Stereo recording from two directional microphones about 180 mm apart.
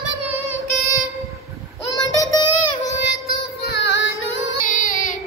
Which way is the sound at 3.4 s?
65° left (ahead or behind).